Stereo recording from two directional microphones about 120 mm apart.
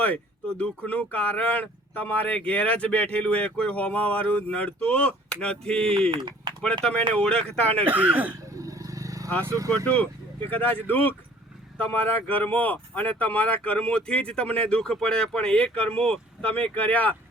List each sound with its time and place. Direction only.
0.0 s a sound: 10° left (ahead or behind)
0.6 s speech: 10° left (ahead or behind)
6.1 s speech: 40° right (ahead or behind)
7.1 s speech: 10° left (ahead or behind)
7.9 s a man's voice: 15° right (ahead or behind)
8.5 s vehicle: 30° right (ahead or behind)
9.4 s speech: 25° right (ahead or behind)
9.7 s speech: 10° left (ahead or behind)